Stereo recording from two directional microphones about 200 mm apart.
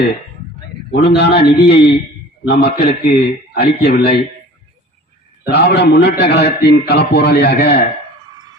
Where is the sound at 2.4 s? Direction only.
50° left (ahead or behind).